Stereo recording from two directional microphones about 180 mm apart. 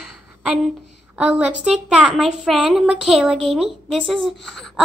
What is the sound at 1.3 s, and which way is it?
A woman's voice, 5° right (ahead or behind).